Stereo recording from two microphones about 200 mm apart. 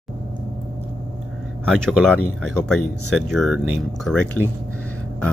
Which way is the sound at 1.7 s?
Centre (ahead or behind).